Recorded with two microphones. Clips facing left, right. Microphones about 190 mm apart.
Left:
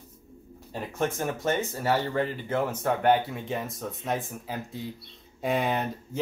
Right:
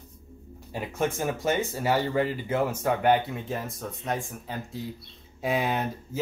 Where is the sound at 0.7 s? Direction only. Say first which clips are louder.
Right 1 dB; 10° right (ahead or behind).